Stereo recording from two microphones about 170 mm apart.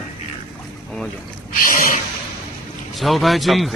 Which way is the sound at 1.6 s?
55° left (ahead or behind).